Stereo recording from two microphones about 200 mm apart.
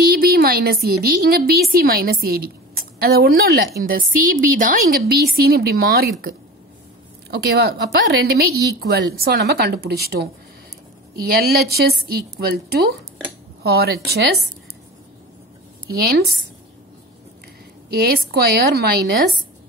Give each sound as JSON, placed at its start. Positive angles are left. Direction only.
{"t": 0.1, "sound": "a sound", "side_deg": -50}
{"t": 0.8, "sound": "a woman's voice", "side_deg": -50}
{"t": 11.1, "sound": "a woman's voice", "side_deg": -50}
{"t": 15.9, "sound": "a woman's voice", "side_deg": -50}
{"t": 17.8, "sound": "a woman's voice", "side_deg": -50}